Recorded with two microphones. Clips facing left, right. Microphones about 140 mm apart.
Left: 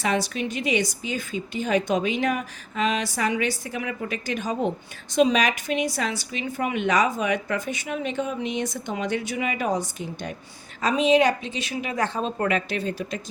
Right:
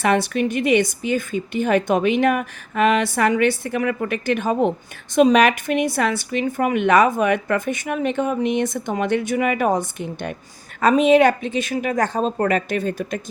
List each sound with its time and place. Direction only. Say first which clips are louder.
0.0 s a woman's voice: right 6 dB; 60° right (ahead or behind)